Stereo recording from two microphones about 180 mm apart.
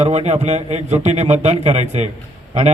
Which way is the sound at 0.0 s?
35° right (ahead or behind).